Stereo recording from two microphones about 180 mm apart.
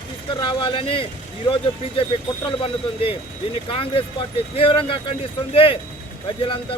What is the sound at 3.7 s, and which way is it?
Speech, 30° left (ahead or behind).